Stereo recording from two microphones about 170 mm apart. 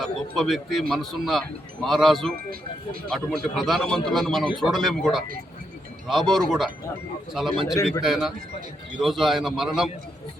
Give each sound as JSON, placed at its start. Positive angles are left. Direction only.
{"t": 0.0, "sound": "speech", "side_deg": 0}
{"t": 2.3, "sound": "speech", "side_deg": -60}
{"t": 3.1, "sound": "speech", "side_deg": 0}